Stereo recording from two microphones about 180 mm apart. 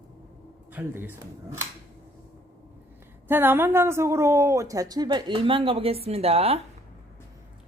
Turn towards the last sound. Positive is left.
turn(degrees=-35)  # may be behind; listen again after turning